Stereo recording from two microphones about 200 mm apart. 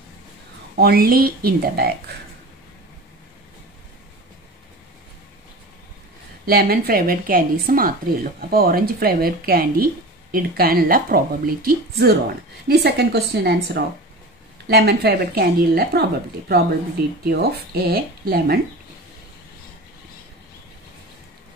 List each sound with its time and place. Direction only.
0.7 s a woman's voice: 50° right (ahead or behind)
6.4 s a woman's voice: 50° right (ahead or behind)